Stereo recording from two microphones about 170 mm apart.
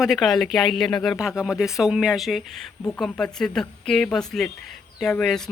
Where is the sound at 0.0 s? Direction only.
Centre (ahead or behind).